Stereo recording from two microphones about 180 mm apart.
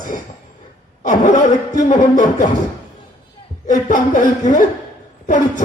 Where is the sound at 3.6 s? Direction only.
45° left (ahead or behind).